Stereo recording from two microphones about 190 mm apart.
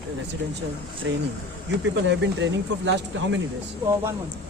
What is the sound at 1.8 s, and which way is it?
Speech, 75° right (ahead or behind).